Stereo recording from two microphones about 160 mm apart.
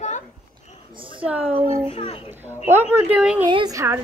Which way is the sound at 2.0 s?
35° left (ahead or behind).